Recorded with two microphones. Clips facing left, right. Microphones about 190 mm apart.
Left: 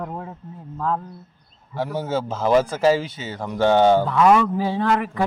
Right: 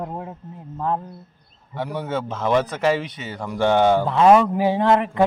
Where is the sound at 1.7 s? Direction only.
25° left (ahead or behind).